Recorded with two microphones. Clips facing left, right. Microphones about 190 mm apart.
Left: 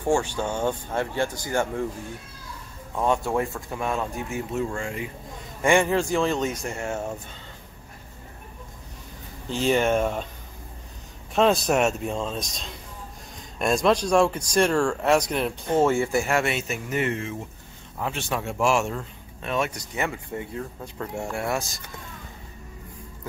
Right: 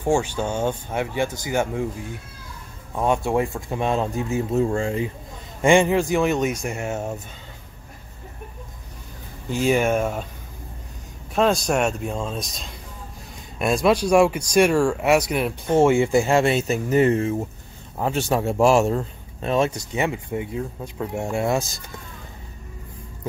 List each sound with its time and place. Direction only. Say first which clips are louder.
0.0 s speech: right 2 dB; 10° right (ahead or behind)
2.9 s speech: right 2 dB; 20° right (ahead or behind)
9.5 s speech: right 2 dB; 10° right (ahead or behind)
11.3 s speech: even; centre (ahead or behind)
15.8 s speech: right 5 dB; 15° right (ahead or behind)